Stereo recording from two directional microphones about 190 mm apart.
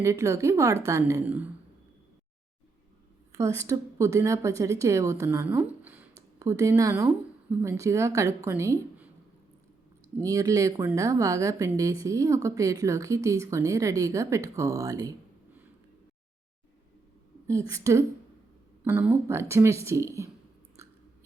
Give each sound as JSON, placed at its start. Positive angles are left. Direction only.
{"t": 0.0, "sound": "a woman's voice", "side_deg": -15}
{"t": 3.3, "sound": "a woman's voice", "side_deg": -15}
{"t": 10.2, "sound": "a woman's voice", "side_deg": -20}
{"t": 17.4, "sound": "a woman's voice", "side_deg": -15}